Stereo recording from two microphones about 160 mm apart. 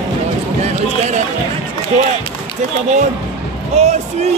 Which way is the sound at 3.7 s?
45° right (ahead or behind).